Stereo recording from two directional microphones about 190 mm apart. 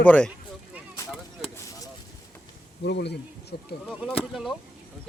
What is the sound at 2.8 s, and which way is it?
Speech, 60° left (ahead or behind).